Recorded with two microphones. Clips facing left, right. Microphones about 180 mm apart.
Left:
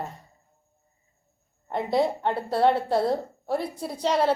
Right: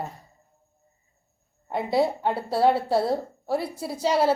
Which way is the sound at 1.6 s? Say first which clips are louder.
Right 1 dB; 5° right (ahead or behind).